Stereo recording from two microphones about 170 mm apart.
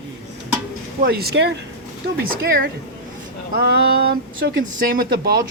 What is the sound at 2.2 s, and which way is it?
Speech, 65° right (ahead or behind).